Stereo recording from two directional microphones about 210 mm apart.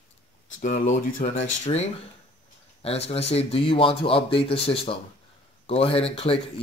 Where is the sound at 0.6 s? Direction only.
35° left (ahead or behind).